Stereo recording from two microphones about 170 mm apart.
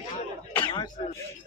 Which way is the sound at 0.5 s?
25° left (ahead or behind).